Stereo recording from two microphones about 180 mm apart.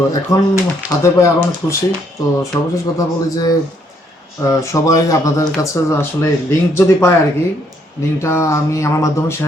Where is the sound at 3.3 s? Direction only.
20° left (ahead or behind).